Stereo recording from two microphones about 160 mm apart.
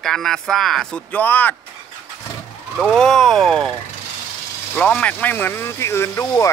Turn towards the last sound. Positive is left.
turn(degrees=15)  # may be behind; listen again after turning